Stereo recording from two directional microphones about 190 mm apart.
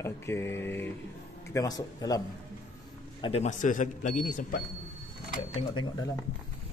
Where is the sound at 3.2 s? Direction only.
35° left (ahead or behind).